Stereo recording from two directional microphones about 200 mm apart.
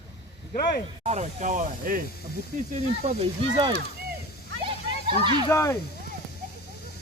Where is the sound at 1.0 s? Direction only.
35° right (ahead or behind).